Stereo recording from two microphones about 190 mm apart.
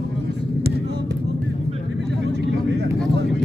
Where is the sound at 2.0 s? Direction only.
65° right (ahead or behind).